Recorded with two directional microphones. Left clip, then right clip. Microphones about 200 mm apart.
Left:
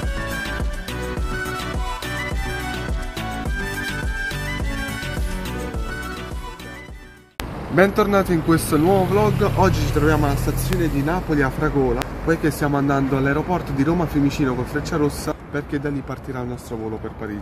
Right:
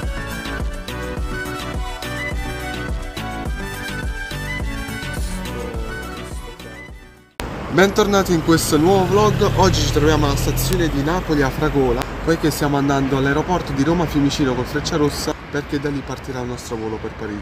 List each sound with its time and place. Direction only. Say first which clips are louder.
0.2 s music: left 2 dB; centre (ahead or behind)
7.7 s speech: right 1 dB; 5° left (ahead or behind)